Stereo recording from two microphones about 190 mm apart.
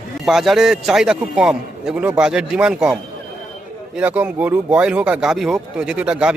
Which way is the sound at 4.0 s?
10° right (ahead or behind).